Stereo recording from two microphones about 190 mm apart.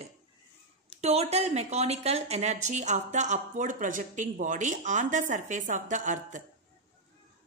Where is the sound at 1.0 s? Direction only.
35° right (ahead or behind).